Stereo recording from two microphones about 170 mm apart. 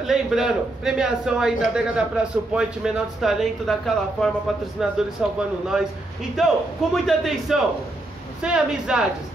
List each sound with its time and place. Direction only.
0.0 s a man's voice: centre (ahead or behind)